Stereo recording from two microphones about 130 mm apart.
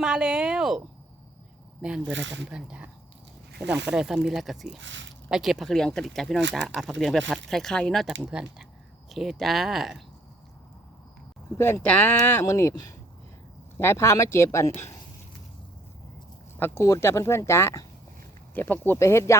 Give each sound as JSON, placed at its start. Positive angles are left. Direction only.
{"t": 0.0, "sound": "a woman's voice", "side_deg": -5}
{"t": 1.8, "sound": "a woman's voice", "side_deg": -5}
{"t": 11.5, "sound": "speech", "side_deg": 15}
{"t": 16.6, "sound": "speech", "side_deg": 20}